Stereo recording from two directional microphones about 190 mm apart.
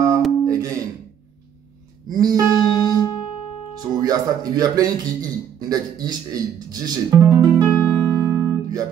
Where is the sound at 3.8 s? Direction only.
20° right (ahead or behind).